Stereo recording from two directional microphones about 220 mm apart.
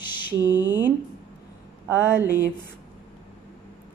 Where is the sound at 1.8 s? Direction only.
10° right (ahead or behind).